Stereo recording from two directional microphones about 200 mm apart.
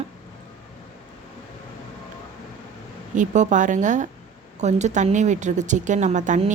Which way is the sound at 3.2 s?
40° right (ahead or behind).